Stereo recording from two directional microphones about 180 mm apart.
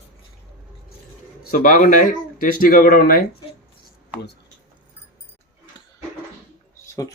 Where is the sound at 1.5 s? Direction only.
50° left (ahead or behind).